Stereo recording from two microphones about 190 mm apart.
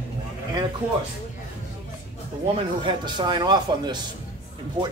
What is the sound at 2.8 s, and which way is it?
Speech, 25° right (ahead or behind).